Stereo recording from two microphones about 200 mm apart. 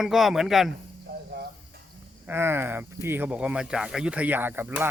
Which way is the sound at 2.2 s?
10° right (ahead or behind).